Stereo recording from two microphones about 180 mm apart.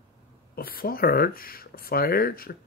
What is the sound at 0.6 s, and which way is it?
Speech, 55° left (ahead or behind).